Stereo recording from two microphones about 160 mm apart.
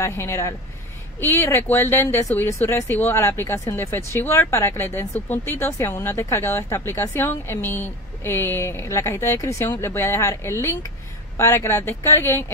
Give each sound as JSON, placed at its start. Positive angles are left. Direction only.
{"t": 0.0, "sound": "speech", "side_deg": 15}